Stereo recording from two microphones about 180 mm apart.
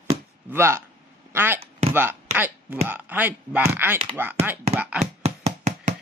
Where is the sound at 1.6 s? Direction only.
35° right (ahead or behind).